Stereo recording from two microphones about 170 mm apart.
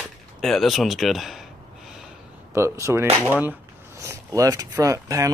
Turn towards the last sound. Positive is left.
turn(degrees=-20)  # may be behind; listen again after turning